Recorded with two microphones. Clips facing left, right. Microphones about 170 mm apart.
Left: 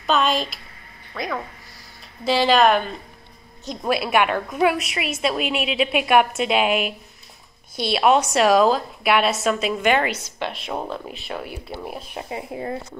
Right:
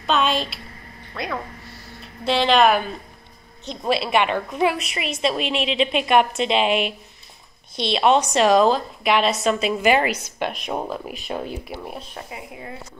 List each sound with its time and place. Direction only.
0.0 s a sound: centre (ahead or behind)
1.1 s a woman's voice: 5° right (ahead or behind)
3.8 s a woman's voice: 5° left (ahead or behind)
10.4 s speech: 15° right (ahead or behind)
11.7 s a woman's voice: centre (ahead or behind)
12.3 s speech: 35° left (ahead or behind)